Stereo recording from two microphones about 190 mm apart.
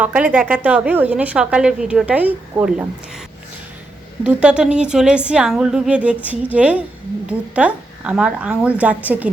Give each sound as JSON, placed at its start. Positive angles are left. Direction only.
{"t": 0.0, "sound": "a woman's voice", "side_deg": -10}
{"t": 4.2, "sound": "a woman's voice", "side_deg": -5}